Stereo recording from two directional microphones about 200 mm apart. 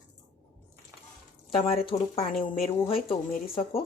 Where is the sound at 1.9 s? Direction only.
30° left (ahead or behind).